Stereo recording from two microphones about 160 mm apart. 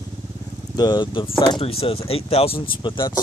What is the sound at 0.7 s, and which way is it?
Speech, 25° left (ahead or behind).